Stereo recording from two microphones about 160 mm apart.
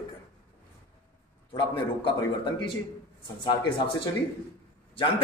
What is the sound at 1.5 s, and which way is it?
Speech, 30° left (ahead or behind).